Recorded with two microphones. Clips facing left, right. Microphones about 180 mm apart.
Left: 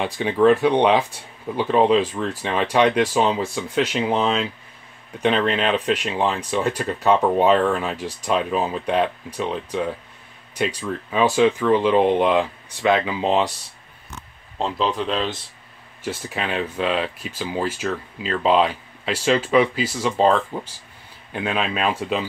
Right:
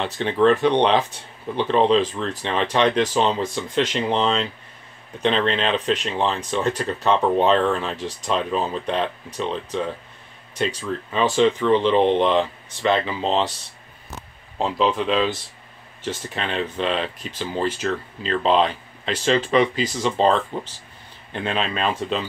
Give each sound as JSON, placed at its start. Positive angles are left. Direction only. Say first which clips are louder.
{"t": 0.0, "sound": "speech", "louder": "left 1 dB", "side_deg": 10}
{"t": 14.6, "sound": "speech", "louder": "right 2 dB", "side_deg": 0}
{"t": 16.0, "sound": "speech", "louder": "left 1 dB", "side_deg": 10}